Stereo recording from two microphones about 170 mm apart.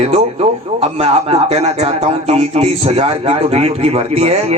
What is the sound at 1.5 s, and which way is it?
A man's voice, 40° right (ahead or behind).